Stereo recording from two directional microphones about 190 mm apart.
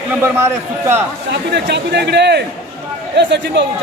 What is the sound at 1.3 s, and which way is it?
Speech, 60° right (ahead or behind).